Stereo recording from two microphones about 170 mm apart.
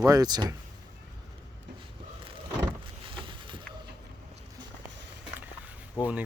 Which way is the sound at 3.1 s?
30° right (ahead or behind).